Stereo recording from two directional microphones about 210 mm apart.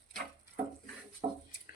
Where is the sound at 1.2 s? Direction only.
20° right (ahead or behind).